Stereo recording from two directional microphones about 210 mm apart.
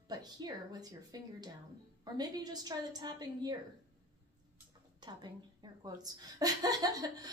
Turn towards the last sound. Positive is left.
turn(degrees=-20)  # may be behind; listen again after turning